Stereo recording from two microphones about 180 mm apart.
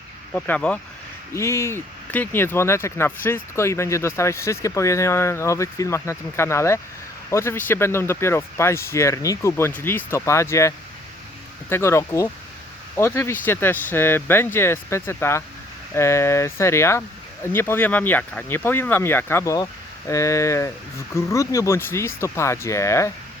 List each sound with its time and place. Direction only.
0.3 s speech: 10° left (ahead or behind)